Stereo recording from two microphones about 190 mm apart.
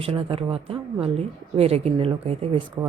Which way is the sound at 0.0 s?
30° right (ahead or behind).